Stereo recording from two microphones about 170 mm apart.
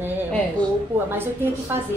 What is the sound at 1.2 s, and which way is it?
Speech, 15° right (ahead or behind).